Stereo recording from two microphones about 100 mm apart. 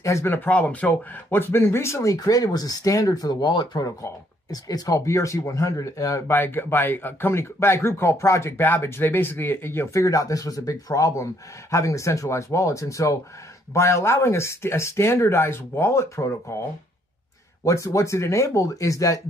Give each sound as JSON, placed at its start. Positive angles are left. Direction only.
{"t": 0.0, "sound": "speech", "side_deg": 25}
{"t": 3.8, "sound": "speech", "side_deg": 35}
{"t": 17.6, "sound": "speech", "side_deg": 30}